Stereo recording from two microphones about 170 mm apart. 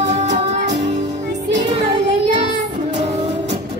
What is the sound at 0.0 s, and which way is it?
Music, 45° right (ahead or behind).